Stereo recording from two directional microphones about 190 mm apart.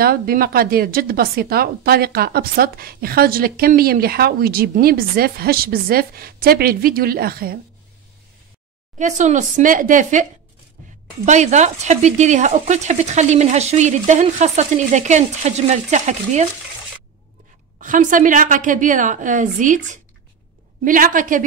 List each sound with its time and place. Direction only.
0.0 s a woman's voice: 50° right (ahead or behind)
8.9 s speech: 40° right (ahead or behind)
11.2 s speech: 40° right (ahead or behind)
17.7 s a woman's voice: 45° right (ahead or behind)